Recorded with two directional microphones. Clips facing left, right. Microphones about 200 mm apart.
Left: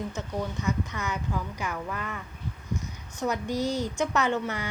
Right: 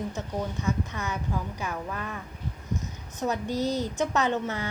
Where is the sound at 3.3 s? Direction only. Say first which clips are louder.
Right 1 dB; 15° left (ahead or behind).